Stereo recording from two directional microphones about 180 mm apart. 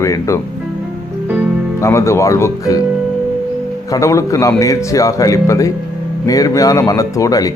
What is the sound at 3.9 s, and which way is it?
Speech, 15° left (ahead or behind).